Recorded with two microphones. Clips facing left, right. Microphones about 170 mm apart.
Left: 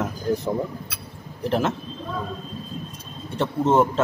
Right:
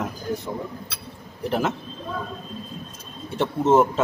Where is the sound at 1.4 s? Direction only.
Centre (ahead or behind).